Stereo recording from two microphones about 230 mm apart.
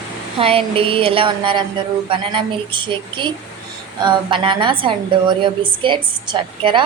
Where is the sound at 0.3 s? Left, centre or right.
Right.